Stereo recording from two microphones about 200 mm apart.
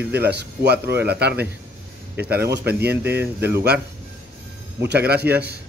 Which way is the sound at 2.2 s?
55° right (ahead or behind).